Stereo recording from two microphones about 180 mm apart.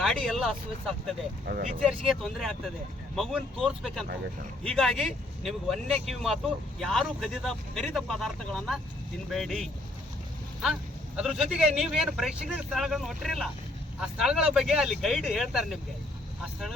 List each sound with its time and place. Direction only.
0.0 s speech: centre (ahead or behind)
1.5 s speech: 65° right (ahead or behind)
1.8 s speech: centre (ahead or behind)
11.2 s speech: centre (ahead or behind)